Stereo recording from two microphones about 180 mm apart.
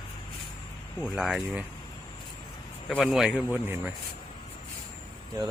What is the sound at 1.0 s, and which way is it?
Speech, 5° right (ahead or behind).